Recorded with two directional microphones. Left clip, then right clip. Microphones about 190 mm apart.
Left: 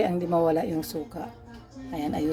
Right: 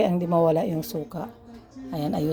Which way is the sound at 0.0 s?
20° right (ahead or behind).